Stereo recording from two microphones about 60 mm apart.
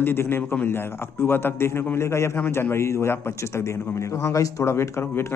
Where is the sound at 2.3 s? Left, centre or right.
Left.